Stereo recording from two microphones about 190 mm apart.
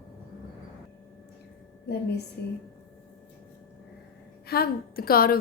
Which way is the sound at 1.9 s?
60° left (ahead or behind).